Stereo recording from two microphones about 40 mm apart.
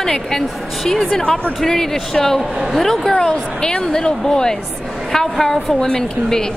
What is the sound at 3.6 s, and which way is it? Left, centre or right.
A woman's voice, centre.